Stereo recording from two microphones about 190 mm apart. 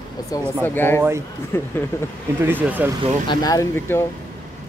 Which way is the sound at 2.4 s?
10° right (ahead or behind).